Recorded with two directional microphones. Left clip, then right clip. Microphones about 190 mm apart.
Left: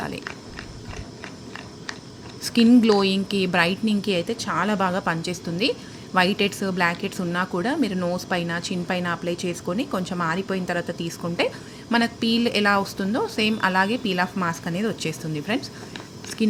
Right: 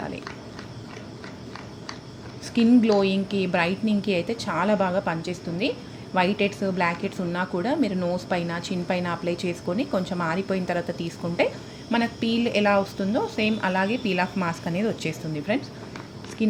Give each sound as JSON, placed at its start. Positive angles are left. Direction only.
{"t": 2.6, "sound": "a woman's voice", "side_deg": 20}